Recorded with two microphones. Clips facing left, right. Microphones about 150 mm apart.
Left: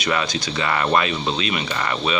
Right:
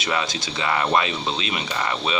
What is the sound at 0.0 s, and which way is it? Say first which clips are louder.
Speech: left 3 dB; 20° right (ahead or behind).